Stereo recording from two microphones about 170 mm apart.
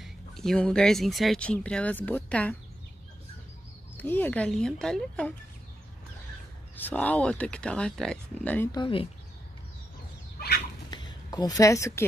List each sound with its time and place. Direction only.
0.0 s speech: 5° left (ahead or behind)
3.9 s speech: 10° left (ahead or behind)
6.8 s speech: 10° left (ahead or behind)
8.7 s speech: 30° left (ahead or behind)
10.9 s a sound: 25° left (ahead or behind)